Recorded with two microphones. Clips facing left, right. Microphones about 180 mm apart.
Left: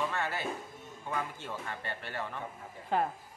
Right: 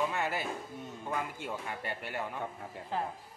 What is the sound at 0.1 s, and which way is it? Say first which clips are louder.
Music: right 1 dB; 10° right (ahead or behind).